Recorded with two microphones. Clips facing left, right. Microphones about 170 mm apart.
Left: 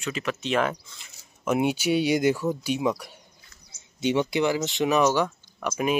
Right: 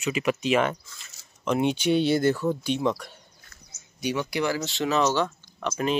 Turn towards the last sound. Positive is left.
turn(degrees=10)  # may be behind; listen again after turning